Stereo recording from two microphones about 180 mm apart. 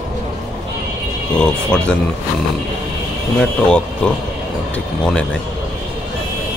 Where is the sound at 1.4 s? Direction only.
5° left (ahead or behind).